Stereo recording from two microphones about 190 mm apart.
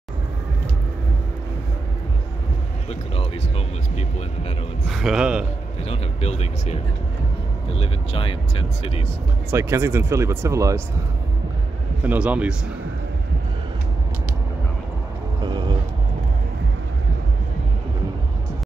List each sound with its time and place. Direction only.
2.9 s speech: 35° left (ahead or behind)
4.8 s a man's voice: centre (ahead or behind)
5.9 s speech: 35° left (ahead or behind)
9.5 s speech: 10° right (ahead or behind)
12.0 s speech: 5° right (ahead or behind)
15.4 s vehicle: 20° right (ahead or behind)